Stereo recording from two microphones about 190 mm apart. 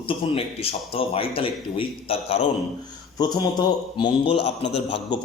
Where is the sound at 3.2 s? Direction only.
20° left (ahead or behind).